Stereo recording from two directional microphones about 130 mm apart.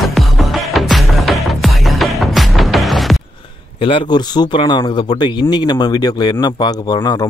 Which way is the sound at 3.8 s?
40° left (ahead or behind).